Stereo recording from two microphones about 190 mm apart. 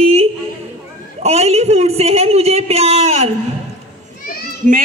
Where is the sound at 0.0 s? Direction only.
35° right (ahead or behind).